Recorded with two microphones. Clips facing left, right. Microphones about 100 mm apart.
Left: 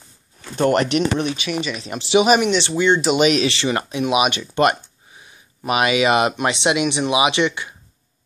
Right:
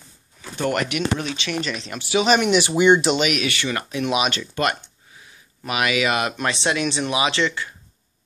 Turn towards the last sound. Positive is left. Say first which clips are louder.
# left 3 dB
turn(degrees=20)  # may be behind; listen again after turning